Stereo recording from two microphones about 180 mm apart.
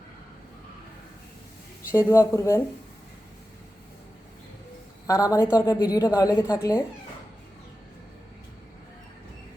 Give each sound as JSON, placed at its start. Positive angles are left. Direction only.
{"t": 1.9, "sound": "speech", "side_deg": 15}
{"t": 5.0, "sound": "a woman's voice", "side_deg": 20}